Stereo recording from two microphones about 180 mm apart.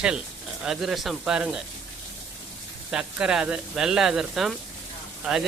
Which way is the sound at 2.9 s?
5° right (ahead or behind).